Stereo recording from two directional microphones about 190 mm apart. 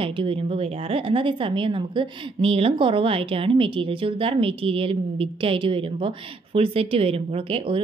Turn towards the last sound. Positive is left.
turn(degrees=-30)  # may be behind; listen again after turning